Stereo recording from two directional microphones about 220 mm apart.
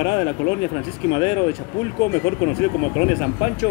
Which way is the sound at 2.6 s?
20° left (ahead or behind).